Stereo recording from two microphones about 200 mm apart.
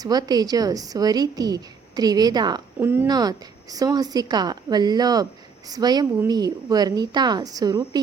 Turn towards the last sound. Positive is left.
turn(degrees=-20)  # may be behind; listen again after turning